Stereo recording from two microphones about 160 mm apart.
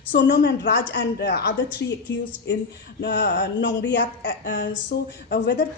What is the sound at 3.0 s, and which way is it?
Speech, 90° left.